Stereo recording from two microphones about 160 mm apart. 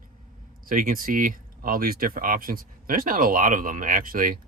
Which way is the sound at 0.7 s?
60° right (ahead or behind).